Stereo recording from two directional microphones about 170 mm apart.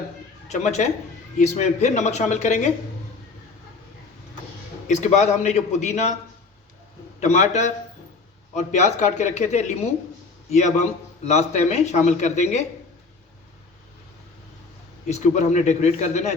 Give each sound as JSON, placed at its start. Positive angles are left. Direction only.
{"t": 0.4, "sound": "a man's voice", "side_deg": 40}
{"t": 4.9, "sound": "a man's voice", "side_deg": 40}
{"t": 7.2, "sound": "speech", "side_deg": 45}
{"t": 15.0, "sound": "a man's voice", "side_deg": 40}